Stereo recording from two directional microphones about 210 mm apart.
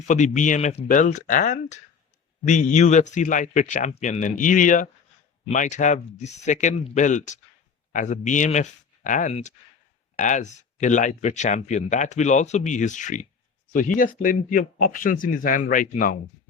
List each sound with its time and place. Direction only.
0.1 s speech: 35° left (ahead or behind)